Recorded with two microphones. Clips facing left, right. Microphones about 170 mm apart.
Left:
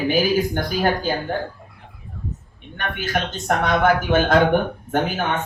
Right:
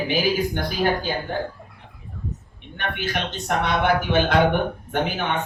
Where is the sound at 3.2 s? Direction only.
45° left (ahead or behind).